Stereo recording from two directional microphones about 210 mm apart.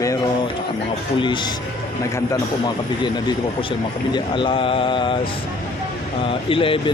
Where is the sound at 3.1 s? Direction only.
20° left (ahead or behind).